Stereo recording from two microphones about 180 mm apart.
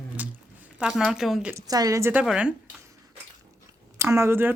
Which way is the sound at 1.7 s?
20° right (ahead or behind).